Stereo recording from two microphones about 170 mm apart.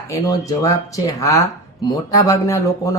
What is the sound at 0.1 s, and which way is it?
Speech, 20° left (ahead or behind).